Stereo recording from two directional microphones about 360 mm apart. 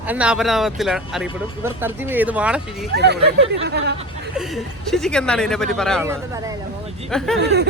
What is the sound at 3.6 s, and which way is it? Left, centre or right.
Speech, right.